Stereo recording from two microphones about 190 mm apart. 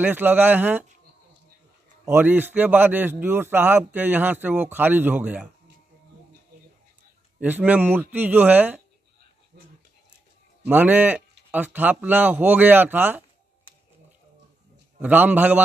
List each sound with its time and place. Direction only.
0.0 s speech: 10° right (ahead or behind)
2.0 s speech: 10° right (ahead or behind)
7.3 s speech: 10° right (ahead or behind)
10.7 s speech: 10° right (ahead or behind)
15.0 s speech: 10° right (ahead or behind)